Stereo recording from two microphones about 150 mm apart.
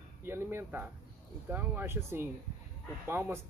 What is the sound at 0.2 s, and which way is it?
Speech, 15° right (ahead or behind).